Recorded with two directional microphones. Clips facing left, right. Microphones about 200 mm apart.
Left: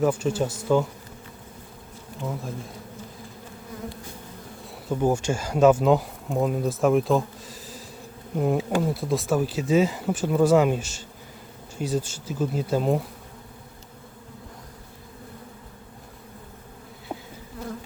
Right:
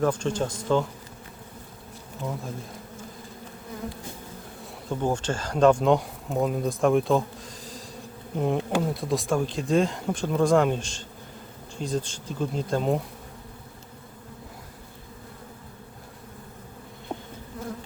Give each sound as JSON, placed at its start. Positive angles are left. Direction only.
{"t": 0.0, "sound": "speech", "side_deg": 5}
{"t": 4.9, "sound": "speech", "side_deg": 10}
{"t": 17.1, "sound": "insect", "side_deg": 5}